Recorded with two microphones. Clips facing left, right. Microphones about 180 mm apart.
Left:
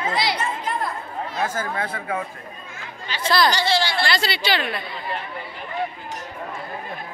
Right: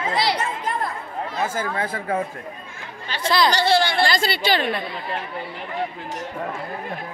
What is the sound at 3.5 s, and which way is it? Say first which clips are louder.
Speech: right 3 dB; 55° right (ahead or behind).